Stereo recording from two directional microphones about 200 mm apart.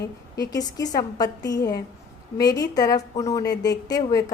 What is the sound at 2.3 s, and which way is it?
A woman's voice, 20° left (ahead or behind).